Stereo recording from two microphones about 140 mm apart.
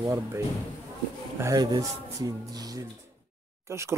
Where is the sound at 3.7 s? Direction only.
20° right (ahead or behind).